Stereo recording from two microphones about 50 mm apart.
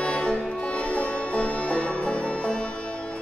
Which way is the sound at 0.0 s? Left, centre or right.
Centre.